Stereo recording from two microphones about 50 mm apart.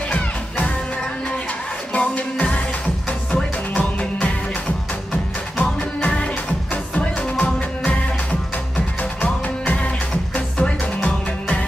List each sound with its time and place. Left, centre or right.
0.1 s music: left
2.0 s music: left
5.6 s music: left